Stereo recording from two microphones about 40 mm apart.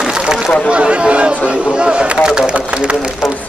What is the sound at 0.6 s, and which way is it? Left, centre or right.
Speech, right.